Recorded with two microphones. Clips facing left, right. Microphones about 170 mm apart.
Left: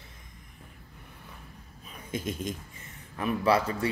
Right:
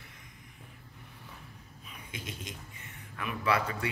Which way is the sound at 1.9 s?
45° left (ahead or behind).